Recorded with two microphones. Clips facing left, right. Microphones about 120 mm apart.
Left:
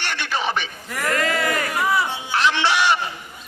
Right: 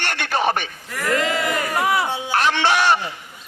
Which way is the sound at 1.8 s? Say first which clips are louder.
Right 1 dB; 65° right (ahead or behind).